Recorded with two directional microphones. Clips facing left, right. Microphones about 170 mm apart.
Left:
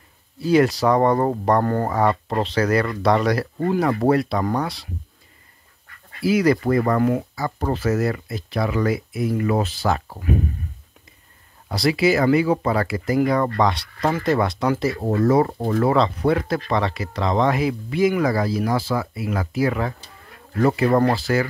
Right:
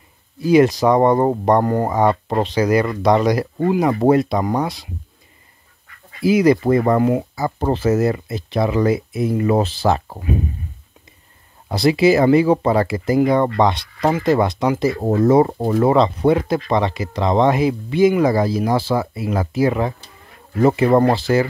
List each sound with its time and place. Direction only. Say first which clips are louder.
0.4 s speech: right 4 dB; 15° right (ahead or behind)
6.2 s speech: right 4 dB; 20° right (ahead or behind)
11.7 s speech: right 5 dB; 25° right (ahead or behind)